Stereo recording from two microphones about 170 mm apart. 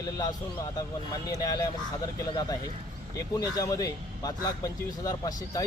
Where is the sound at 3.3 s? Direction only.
20° left (ahead or behind).